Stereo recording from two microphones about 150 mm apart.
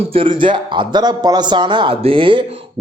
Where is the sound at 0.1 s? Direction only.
35° right (ahead or behind).